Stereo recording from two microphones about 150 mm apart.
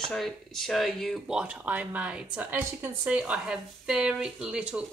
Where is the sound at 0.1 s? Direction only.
Centre (ahead or behind).